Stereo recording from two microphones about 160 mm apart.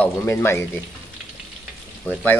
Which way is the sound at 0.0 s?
15° left (ahead or behind).